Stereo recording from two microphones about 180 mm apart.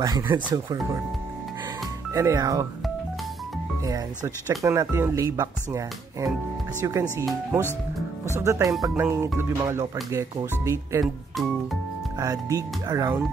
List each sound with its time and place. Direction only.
0.0 s speech: 20° right (ahead or behind)
2.1 s speech: 20° right (ahead or behind)
4.6 s speech: 15° right (ahead or behind)
8.4 s speech: 15° right (ahead or behind)
11.3 s speech: centre (ahead or behind)
12.2 s speech: 20° right (ahead or behind)